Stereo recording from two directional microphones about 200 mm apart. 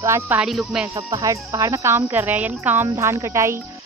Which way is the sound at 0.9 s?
15° right (ahead or behind).